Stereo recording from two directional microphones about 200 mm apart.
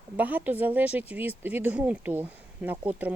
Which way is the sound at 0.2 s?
10° right (ahead or behind).